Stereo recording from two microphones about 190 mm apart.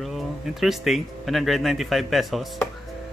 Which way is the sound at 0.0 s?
Centre (ahead or behind).